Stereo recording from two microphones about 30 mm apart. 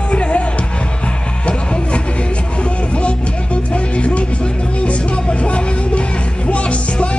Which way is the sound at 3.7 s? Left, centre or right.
Left.